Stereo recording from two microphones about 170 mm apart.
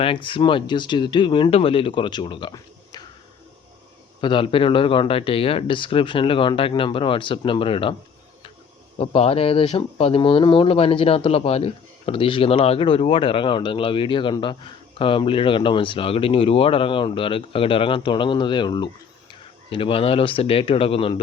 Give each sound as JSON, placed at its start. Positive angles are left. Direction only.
{"t": 0.0, "sound": "speech", "side_deg": 30}
{"t": 4.2, "sound": "speech", "side_deg": 30}
{"t": 9.0, "sound": "speech", "side_deg": 35}